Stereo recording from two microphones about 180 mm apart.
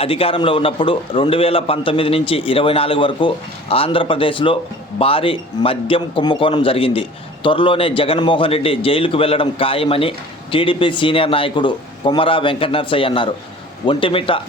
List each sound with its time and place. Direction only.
0.0 s a man's voice: 30° left (ahead or behind)